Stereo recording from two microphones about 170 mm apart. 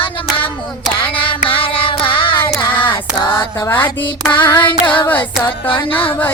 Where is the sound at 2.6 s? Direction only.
10° left (ahead or behind).